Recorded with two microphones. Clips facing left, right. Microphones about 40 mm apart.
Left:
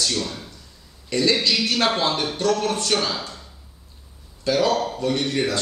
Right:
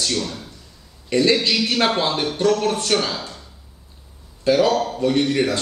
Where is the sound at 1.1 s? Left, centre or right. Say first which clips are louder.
Right 3 dB; centre.